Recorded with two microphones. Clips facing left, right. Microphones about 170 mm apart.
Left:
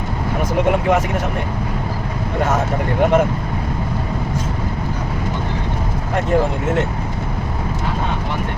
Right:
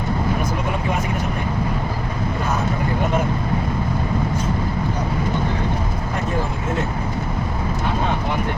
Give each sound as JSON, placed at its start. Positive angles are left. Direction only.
{"t": 0.7, "sound": "speech", "side_deg": 80}